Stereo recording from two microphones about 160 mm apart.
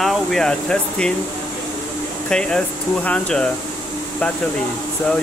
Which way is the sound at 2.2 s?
5° left (ahead or behind).